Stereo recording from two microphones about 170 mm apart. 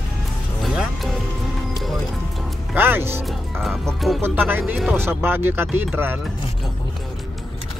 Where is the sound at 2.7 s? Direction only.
15° right (ahead or behind).